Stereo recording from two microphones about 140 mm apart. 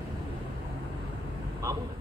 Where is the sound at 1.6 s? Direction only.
20° right (ahead or behind).